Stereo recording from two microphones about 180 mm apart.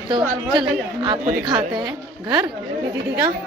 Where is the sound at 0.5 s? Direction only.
25° right (ahead or behind).